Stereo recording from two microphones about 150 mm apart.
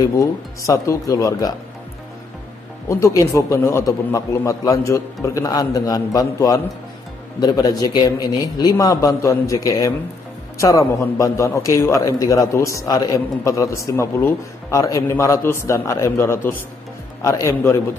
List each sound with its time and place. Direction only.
0.0 s a man's voice: 20° left (ahead or behind)
2.9 s a man's voice: 20° left (ahead or behind)